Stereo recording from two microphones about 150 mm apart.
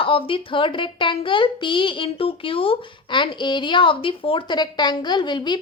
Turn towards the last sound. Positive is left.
turn(degrees=30)  # may be behind; listen again after turning